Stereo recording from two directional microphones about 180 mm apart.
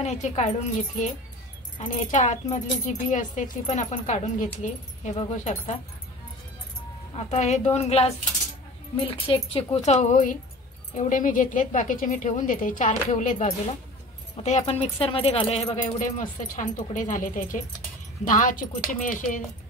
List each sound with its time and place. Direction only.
0.0 s a woman's voice: 40° left (ahead or behind)
7.2 s a woman's voice: 40° left (ahead or behind)